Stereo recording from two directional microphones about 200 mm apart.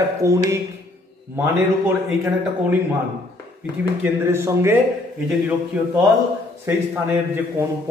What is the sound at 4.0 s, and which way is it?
Speech, 15° right (ahead or behind).